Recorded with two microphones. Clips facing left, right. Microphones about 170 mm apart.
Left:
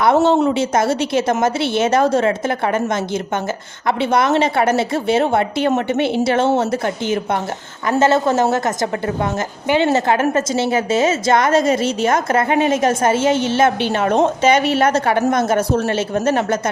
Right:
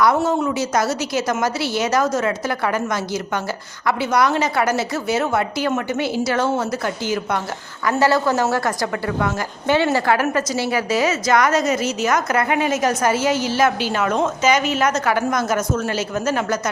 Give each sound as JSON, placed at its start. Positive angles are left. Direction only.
{"t": 0.3, "sound": "a woman's voice", "side_deg": 30}